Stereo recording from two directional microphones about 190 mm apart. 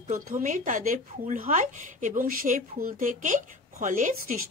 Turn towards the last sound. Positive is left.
turn(degrees=-40)  # may be behind; listen again after turning